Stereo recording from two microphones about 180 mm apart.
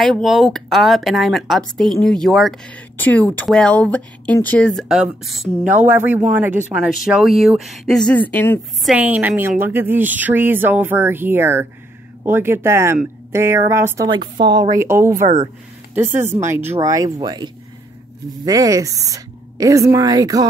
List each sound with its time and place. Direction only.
0.0 s a woman's voice: centre (ahead or behind)
8.8 s a woman's voice: 10° right (ahead or behind)